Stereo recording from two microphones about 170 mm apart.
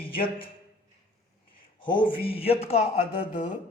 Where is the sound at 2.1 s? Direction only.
35° left (ahead or behind).